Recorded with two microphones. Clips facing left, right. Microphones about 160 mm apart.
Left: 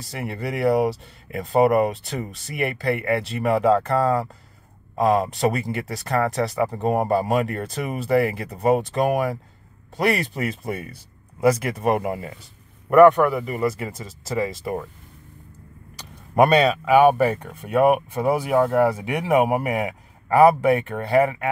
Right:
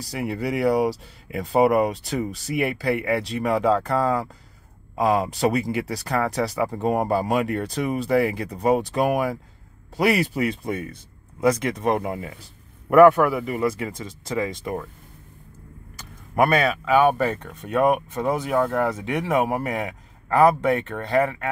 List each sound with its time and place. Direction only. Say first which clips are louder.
0.0 s speech: right 3 dB; centre (ahead or behind)
16.3 s speech: left 3 dB; 15° left (ahead or behind)